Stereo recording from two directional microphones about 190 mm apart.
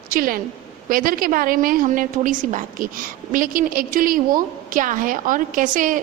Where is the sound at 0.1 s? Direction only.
50° right (ahead or behind).